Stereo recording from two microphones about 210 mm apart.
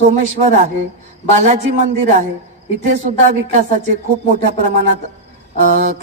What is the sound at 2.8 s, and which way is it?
A man's voice, 35° right (ahead or behind).